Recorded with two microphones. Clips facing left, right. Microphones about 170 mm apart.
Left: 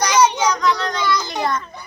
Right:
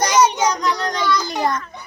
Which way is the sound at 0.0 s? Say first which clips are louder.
Even; 45° right (ahead or behind).